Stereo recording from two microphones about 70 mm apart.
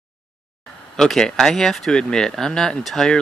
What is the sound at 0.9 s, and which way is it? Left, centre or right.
Speech, centre.